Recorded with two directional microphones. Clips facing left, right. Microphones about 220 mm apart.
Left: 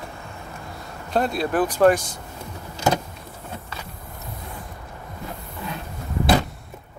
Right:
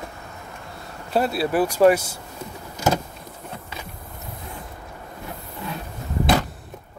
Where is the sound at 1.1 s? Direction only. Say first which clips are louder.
Right 1 dB; 5° right (ahead or behind).